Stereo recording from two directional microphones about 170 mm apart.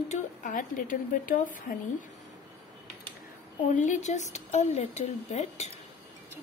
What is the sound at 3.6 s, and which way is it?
Speech, 45° left (ahead or behind).